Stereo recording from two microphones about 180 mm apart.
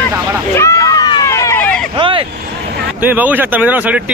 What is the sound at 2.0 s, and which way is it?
Speech, 30° right (ahead or behind).